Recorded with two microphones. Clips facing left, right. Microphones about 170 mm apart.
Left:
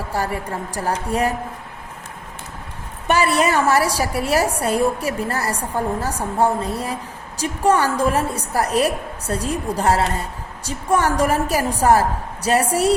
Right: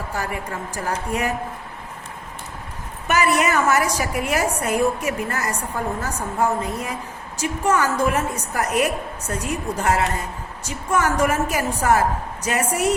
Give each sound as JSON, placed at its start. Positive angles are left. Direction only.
{"t": 0.1, "sound": "a woman's voice", "side_deg": 35}
{"t": 3.1, "sound": "a woman's voice", "side_deg": 30}